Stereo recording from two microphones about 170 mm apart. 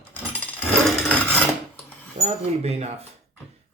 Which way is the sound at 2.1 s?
40° right (ahead or behind).